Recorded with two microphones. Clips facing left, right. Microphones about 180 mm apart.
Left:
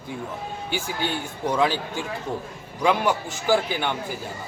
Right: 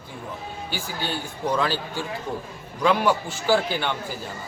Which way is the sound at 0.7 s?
20° left (ahead or behind).